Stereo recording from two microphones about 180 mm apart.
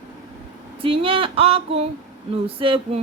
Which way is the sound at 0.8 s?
30° right (ahead or behind).